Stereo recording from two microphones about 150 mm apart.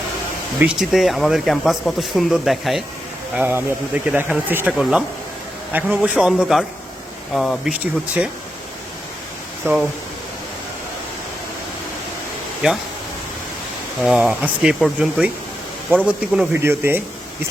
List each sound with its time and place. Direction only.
0.6 s speech: 5° right (ahead or behind)
3.3 s speech: 15° right (ahead or behind); by 7.7 s 5° left (ahead or behind)
7.7 s speech: 10° right (ahead or behind)
9.7 s speech: 15° right (ahead or behind)
12.6 s speech: 5° right (ahead or behind)
14.0 s speech: 5° right (ahead or behind)